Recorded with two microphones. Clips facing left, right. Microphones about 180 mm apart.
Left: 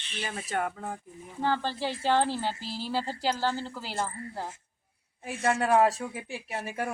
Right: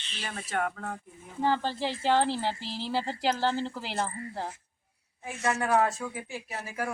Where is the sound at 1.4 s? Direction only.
15° right (ahead or behind).